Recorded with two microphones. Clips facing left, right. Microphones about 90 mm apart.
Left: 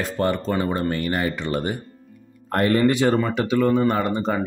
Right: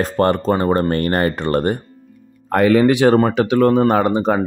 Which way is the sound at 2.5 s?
90° right.